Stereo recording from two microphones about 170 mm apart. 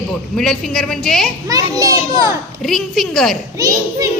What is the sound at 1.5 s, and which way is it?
Speech, 20° right (ahead or behind).